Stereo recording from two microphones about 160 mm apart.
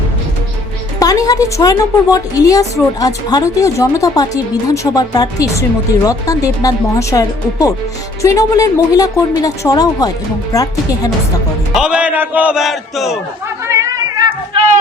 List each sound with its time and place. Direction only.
0.9 s a woman's voice: 20° left (ahead or behind)
11.7 s a man's voice: 5° right (ahead or behind)
13.7 s a sound: 20° right (ahead or behind)